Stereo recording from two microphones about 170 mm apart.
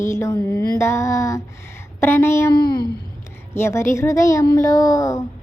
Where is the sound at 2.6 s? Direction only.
25° left (ahead or behind).